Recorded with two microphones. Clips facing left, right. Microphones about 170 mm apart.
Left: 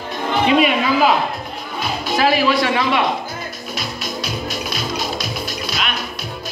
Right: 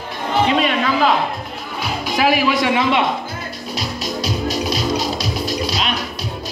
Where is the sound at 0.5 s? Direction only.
10° left (ahead or behind).